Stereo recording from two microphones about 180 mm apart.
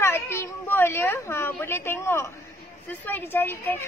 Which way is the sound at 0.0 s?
15° left (ahead or behind).